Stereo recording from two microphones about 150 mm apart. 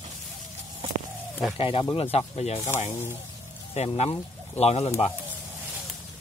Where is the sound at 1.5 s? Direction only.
35° left (ahead or behind).